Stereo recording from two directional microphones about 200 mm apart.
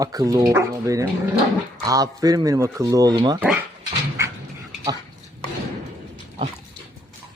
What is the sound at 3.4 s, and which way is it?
Speech, 5° right (ahead or behind).